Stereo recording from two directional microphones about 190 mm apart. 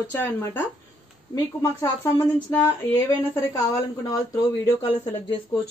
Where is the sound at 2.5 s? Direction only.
10° left (ahead or behind).